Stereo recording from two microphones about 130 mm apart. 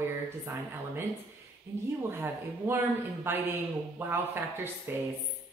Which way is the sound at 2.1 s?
20° right (ahead or behind).